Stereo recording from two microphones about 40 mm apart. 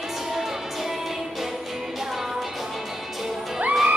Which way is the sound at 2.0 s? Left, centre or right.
Centre.